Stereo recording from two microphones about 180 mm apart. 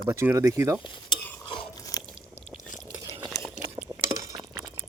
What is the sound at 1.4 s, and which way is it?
Crunch, 25° left (ahead or behind).